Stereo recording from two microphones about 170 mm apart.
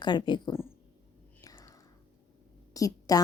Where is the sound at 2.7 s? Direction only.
20° left (ahead or behind).